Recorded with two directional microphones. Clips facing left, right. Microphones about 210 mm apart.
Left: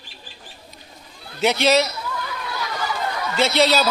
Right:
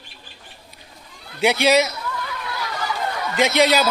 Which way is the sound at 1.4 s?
10° right (ahead or behind).